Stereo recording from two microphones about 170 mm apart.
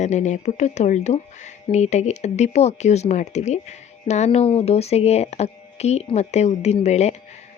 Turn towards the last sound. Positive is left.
turn(degrees=40)  # may be behind; listen again after turning